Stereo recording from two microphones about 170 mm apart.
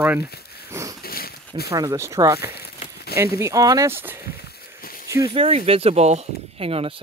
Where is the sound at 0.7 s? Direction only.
15° right (ahead or behind).